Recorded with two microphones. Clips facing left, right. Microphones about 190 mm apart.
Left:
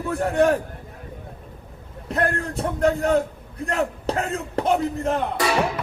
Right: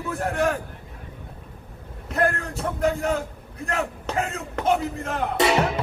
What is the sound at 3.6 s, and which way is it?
Speech, 35° left (ahead or behind).